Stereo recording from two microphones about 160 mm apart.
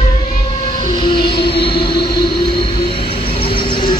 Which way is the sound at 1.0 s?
30° left (ahead or behind).